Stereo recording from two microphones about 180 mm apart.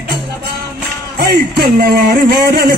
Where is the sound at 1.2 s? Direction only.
60° right (ahead or behind).